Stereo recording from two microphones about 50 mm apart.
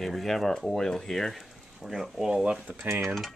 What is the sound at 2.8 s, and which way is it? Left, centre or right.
Mechanisms, right.